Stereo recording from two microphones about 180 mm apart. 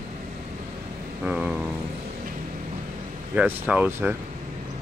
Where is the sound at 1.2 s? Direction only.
5° right (ahead or behind).